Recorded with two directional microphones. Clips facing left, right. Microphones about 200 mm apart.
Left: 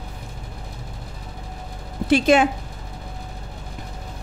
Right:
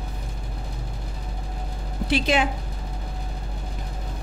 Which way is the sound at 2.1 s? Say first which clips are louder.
Left 6 dB; 50° left (ahead or behind).